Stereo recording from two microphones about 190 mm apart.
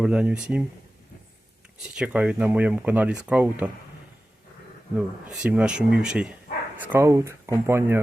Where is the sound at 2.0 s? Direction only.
5° right (ahead or behind).